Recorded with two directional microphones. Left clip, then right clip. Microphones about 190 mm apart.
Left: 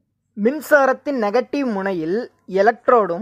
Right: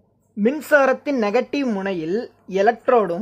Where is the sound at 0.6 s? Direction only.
15° left (ahead or behind).